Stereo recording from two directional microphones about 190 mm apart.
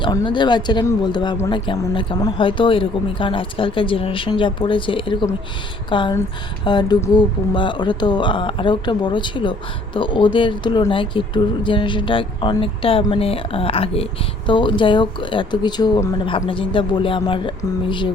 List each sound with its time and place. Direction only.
0.0 s speech: 25° left (ahead or behind)